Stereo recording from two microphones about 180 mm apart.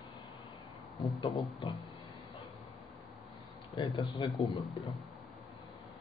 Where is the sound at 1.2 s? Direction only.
25° left (ahead or behind).